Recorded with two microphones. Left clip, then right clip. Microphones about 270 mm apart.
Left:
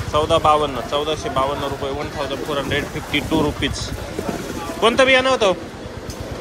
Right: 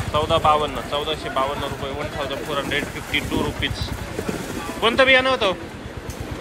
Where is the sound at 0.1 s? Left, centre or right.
Centre.